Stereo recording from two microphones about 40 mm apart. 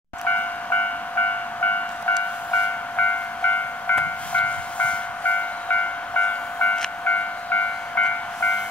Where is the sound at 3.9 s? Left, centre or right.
Left.